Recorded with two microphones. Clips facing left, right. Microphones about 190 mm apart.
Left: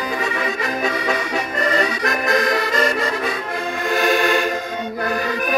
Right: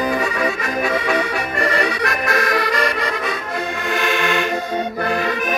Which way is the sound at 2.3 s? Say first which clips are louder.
Left 1 dB; 20° left (ahead or behind).